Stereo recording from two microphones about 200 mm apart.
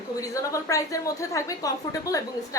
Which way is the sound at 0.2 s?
15° left (ahead or behind).